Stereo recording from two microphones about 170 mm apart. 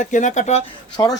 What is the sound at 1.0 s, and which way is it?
Speech, 25° left (ahead or behind).